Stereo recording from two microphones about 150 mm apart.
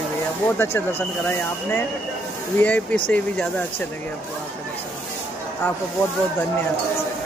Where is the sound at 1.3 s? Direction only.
15° left (ahead or behind).